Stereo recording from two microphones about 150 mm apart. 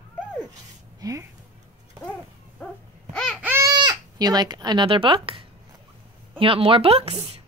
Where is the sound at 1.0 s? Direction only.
20° right (ahead or behind).